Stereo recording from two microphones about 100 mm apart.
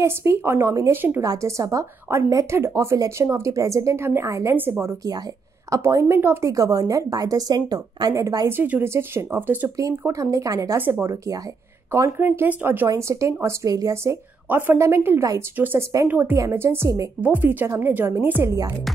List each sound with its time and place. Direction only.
0.0 s a woman's voice: 25° right (ahead or behind)
1.2 s a woman's voice: 35° right (ahead or behind)
8.5 s a woman's voice: 20° right (ahead or behind)
9.8 s a woman's voice: 35° right (ahead or behind)
10.8 s a woman's voice: 20° right (ahead or behind)
14.5 s a woman's voice: 25° right (ahead or behind)
16.3 s a woman's voice: 30° right (ahead or behind)
17.2 s a woman's voice: 20° right (ahead or behind)